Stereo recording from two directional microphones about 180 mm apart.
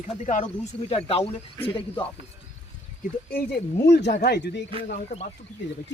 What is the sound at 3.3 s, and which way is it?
Speech, 60° left (ahead or behind).